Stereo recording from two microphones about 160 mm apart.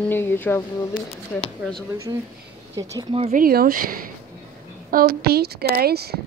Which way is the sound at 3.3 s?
65° right (ahead or behind).